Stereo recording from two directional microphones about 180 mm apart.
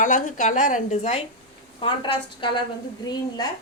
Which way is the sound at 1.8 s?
25° left (ahead or behind).